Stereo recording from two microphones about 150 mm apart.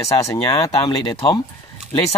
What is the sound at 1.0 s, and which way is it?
Speech, 35° left (ahead or behind).